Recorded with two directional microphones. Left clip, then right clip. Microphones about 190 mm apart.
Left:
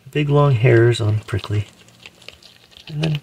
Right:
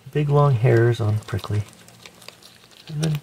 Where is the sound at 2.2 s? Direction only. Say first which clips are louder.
Left 2 dB; 15° right (ahead or behind).